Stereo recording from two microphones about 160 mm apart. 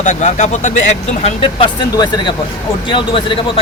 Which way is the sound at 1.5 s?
30° left (ahead or behind).